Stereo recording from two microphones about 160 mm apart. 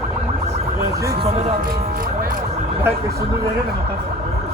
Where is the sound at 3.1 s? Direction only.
80° right.